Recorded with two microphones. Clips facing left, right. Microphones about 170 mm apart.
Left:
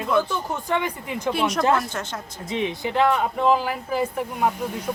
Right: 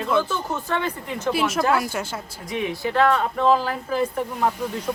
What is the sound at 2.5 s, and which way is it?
Speech, 20° left (ahead or behind).